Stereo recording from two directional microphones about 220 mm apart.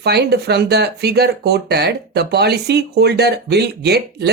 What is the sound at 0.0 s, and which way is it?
Speech, 50° right (ahead or behind).